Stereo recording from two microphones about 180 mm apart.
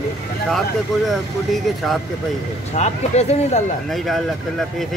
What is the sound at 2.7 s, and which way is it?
Speech, 35° left (ahead or behind).